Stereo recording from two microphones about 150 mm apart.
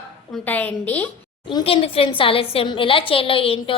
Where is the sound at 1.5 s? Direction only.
35° left (ahead or behind).